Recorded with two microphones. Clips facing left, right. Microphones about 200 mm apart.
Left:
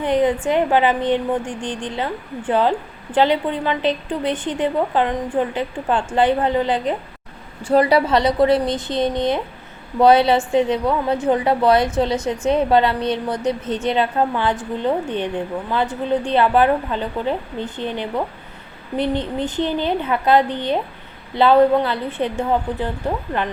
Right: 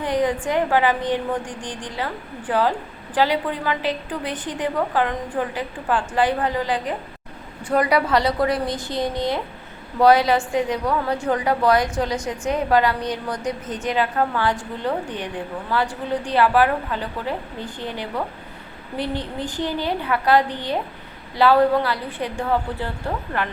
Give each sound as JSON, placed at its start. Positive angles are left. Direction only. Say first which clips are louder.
{"t": 0.0, "sound": "a woman's voice", "louder": "left 4 dB", "side_deg": 25}